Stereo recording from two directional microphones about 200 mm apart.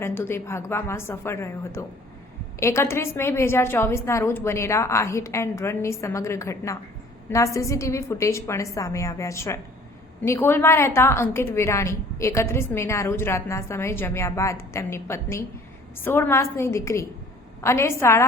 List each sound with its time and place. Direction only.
0.0 s a woman's voice: 10° left (ahead or behind)